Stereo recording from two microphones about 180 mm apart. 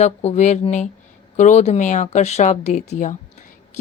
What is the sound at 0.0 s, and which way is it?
Speech, 35° left (ahead or behind).